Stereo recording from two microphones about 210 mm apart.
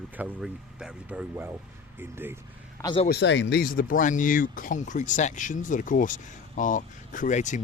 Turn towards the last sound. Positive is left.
turn(degrees=35)  # may be behind; listen again after turning